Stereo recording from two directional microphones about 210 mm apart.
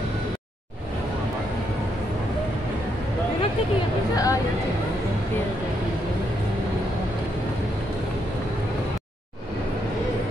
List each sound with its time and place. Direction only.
4.1 s speech: 15° left (ahead or behind)